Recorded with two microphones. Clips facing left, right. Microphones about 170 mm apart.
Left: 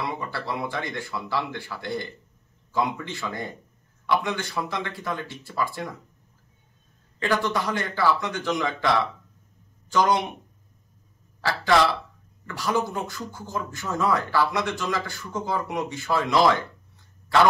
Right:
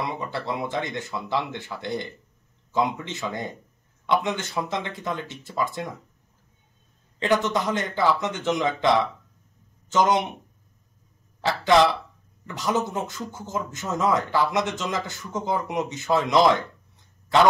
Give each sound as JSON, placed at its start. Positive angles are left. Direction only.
{"t": 0.0, "sound": "speech", "side_deg": -20}
{"t": 7.2, "sound": "speech", "side_deg": -20}
{"t": 12.4, "sound": "speech", "side_deg": -20}